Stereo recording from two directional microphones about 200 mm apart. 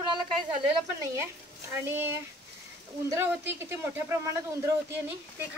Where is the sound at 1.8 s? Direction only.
10° right (ahead or behind).